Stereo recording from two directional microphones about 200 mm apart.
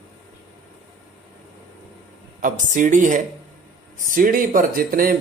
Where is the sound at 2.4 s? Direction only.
40° right (ahead or behind).